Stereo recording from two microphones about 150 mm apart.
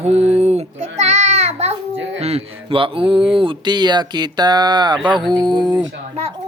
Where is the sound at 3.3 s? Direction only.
35° right (ahead or behind).